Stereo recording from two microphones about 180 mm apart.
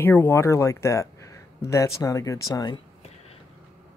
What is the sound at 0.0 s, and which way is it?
Speech, 10° left (ahead or behind).